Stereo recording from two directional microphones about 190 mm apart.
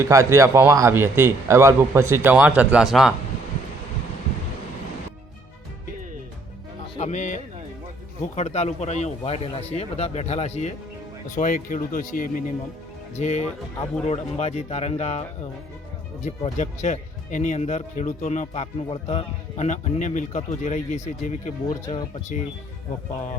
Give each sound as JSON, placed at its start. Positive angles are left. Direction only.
{"t": 0.0, "sound": "a man's voice", "side_deg": -15}
{"t": 6.9, "sound": "a man's voice", "side_deg": 40}
{"t": 16.2, "sound": "speech", "side_deg": 40}